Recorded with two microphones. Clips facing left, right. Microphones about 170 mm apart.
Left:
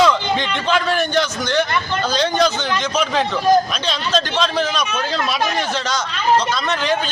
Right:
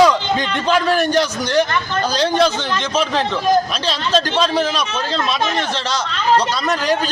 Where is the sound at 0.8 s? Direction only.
35° right (ahead or behind).